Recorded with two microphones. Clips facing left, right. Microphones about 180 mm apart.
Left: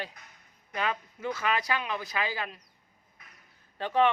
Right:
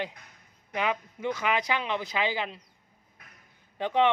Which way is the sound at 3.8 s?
15° right (ahead or behind).